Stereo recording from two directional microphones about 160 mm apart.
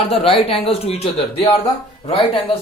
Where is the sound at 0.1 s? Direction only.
40° left (ahead or behind).